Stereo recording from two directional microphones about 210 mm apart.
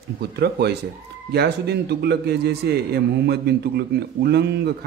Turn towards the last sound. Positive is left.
turn(degrees=-50)  # may be behind; listen again after turning